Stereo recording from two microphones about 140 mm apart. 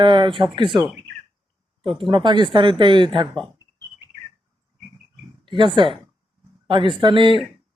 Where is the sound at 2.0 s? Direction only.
35° right (ahead or behind).